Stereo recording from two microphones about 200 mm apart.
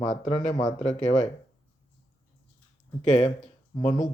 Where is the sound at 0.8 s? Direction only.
35° left (ahead or behind).